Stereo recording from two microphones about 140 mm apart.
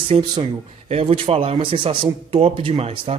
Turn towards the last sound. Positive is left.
turn(degrees=-40)  # may be behind; listen again after turning